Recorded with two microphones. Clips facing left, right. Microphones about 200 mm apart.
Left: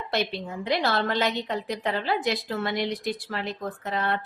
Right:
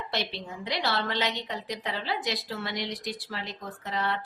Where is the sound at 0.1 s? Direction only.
50° left (ahead or behind).